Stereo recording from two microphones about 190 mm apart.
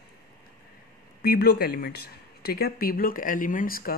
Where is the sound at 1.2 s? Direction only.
55° left (ahead or behind).